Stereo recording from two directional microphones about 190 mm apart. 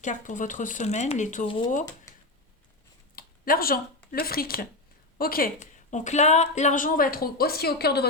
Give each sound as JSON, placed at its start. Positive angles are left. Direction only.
{"t": 0.0, "sound": "speech", "side_deg": 40}
{"t": 1.5, "sound": "speech", "side_deg": 25}
{"t": 2.1, "sound": "a sound", "side_deg": 15}
{"t": 3.2, "sound": "a woman's voice", "side_deg": 50}